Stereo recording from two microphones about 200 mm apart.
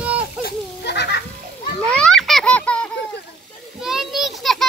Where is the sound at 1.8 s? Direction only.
5° left (ahead or behind).